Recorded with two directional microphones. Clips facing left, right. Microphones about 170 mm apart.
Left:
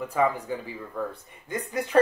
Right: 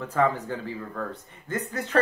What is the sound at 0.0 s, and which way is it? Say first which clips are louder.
A man's voice: right 1 dB; 10° left (ahead or behind).